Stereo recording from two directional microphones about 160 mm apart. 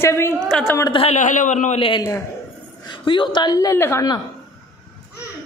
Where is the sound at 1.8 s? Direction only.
30° left (ahead or behind).